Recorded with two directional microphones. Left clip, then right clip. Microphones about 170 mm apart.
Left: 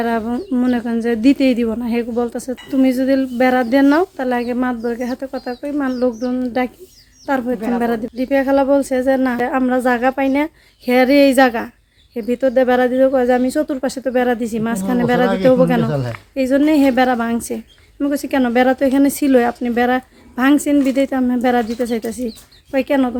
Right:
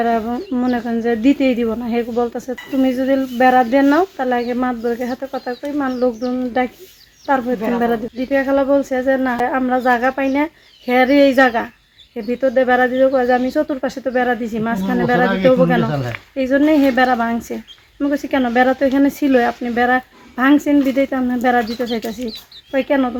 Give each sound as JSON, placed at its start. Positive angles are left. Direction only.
{"t": 0.0, "sound": "speech", "side_deg": 30}